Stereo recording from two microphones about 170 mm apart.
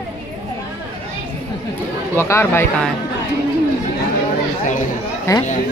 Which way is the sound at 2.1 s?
15° left (ahead or behind).